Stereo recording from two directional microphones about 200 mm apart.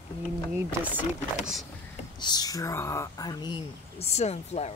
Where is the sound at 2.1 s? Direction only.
20° left (ahead or behind).